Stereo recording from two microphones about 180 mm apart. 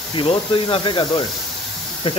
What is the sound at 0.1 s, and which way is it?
Speech, 30° left (ahead or behind).